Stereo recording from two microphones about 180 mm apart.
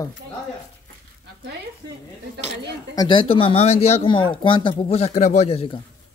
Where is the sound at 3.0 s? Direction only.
25° left (ahead or behind).